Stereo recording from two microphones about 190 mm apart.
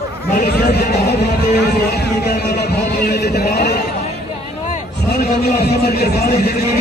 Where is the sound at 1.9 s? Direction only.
60° left (ahead or behind).